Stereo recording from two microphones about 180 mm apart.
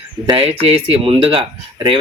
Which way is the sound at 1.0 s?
30° right (ahead or behind).